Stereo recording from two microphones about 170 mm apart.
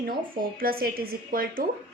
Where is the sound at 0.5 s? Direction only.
60° right (ahead or behind).